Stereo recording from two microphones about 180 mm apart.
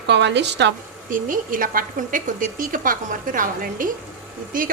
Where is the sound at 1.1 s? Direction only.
50° right (ahead or behind).